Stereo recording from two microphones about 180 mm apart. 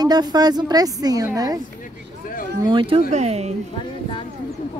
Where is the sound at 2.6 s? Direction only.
30° right (ahead or behind).